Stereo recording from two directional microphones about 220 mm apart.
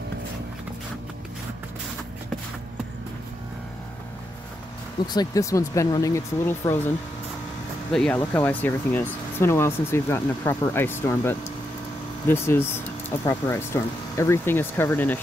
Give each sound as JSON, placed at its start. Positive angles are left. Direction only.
{"t": 5.0, "sound": "speech", "side_deg": 20}
{"t": 7.9, "sound": "speech", "side_deg": 5}